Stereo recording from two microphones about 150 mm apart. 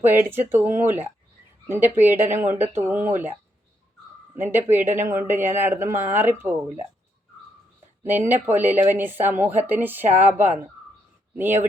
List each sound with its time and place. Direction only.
0.0 s speech: 15° right (ahead or behind)
4.4 s speech: 15° right (ahead or behind)
8.3 s speech: 15° right (ahead or behind)